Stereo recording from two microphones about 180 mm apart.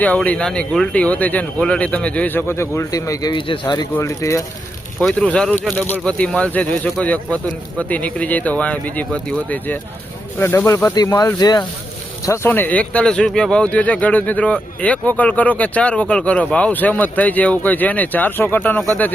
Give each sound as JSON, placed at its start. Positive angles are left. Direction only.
{"t": 0.0, "sound": "speech", "side_deg": 10}
{"t": 4.9, "sound": "speech", "side_deg": 5}